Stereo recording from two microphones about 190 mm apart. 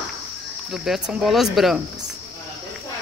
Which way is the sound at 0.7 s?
5° right (ahead or behind).